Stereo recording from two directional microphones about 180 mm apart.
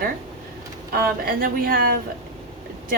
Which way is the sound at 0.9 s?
55° right (ahead or behind).